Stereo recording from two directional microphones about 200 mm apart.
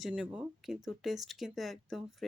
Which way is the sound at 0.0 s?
5° right (ahead or behind).